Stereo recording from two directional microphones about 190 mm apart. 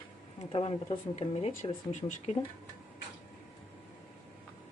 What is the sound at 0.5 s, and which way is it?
Speech, 30° left (ahead or behind).